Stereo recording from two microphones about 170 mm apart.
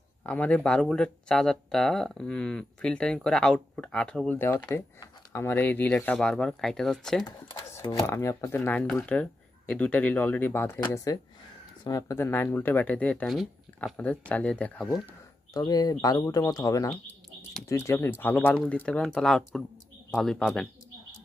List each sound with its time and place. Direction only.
0.2 s speech: 10° left (ahead or behind)
7.2 s speech: 25° left (ahead or behind)
8.5 s speech: 5° left (ahead or behind)
10.8 s speech: 20° left (ahead or behind); by 15.0 s 5° left (ahead or behind)
15.5 s speech: 20° left (ahead or behind); by 20.6 s centre (ahead or behind)